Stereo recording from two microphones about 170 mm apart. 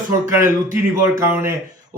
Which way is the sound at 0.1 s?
15° right (ahead or behind).